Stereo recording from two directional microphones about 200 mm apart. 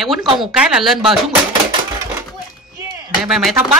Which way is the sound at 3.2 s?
Centre (ahead or behind).